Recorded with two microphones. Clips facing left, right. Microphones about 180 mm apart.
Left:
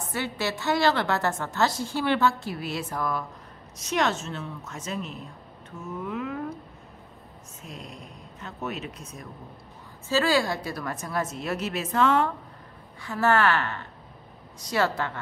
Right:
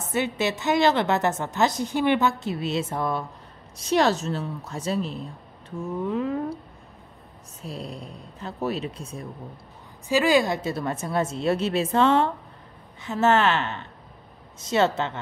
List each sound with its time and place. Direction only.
0.1 s a woman's voice: 20° right (ahead or behind)
7.6 s speech: 35° right (ahead or behind)
10.0 s a woman's voice: 15° right (ahead or behind)